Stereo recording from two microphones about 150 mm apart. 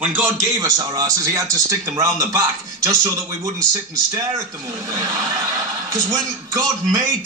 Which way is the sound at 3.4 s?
20° right (ahead or behind).